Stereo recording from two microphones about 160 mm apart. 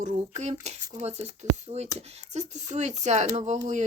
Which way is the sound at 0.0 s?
45° right (ahead or behind).